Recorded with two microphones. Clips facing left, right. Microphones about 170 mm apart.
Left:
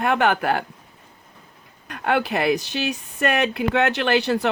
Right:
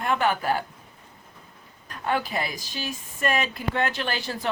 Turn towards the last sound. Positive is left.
turn(degrees=70)  # may be behind; listen again after turning